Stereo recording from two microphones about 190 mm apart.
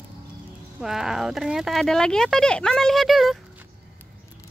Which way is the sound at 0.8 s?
Centre (ahead or behind).